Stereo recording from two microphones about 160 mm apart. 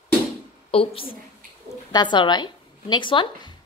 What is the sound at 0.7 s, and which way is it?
A woman's voice, 35° left (ahead or behind).